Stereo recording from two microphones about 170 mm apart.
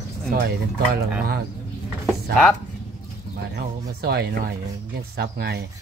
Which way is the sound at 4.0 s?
65° right (ahead or behind).